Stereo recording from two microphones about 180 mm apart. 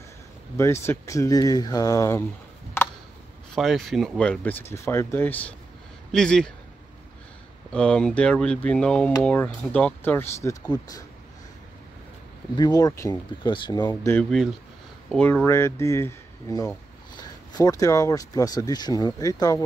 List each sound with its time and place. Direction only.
0.6 s speech: 15° left (ahead or behind)
3.5 s speech: centre (ahead or behind)
7.7 s speech: 5° left (ahead or behind)
12.5 s speech: 20° left (ahead or behind)
14.1 s speech: centre (ahead or behind)
15.4 s speech: 15° left (ahead or behind)